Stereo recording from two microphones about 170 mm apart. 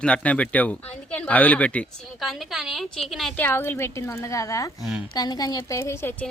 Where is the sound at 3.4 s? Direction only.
10° left (ahead or behind).